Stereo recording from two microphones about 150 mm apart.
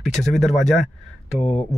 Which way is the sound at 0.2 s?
Centre (ahead or behind).